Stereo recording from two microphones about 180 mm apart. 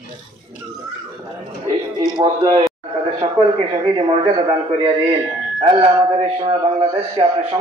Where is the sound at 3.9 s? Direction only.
30° right (ahead or behind).